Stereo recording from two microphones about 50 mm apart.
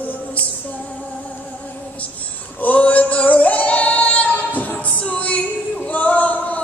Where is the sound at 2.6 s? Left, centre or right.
Left.